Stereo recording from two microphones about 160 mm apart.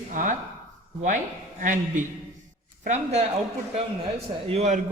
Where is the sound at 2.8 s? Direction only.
45° right (ahead or behind).